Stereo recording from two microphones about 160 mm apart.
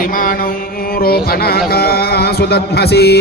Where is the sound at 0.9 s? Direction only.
70° left (ahead or behind).